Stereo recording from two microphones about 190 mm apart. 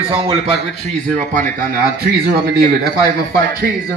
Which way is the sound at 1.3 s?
45° right (ahead or behind).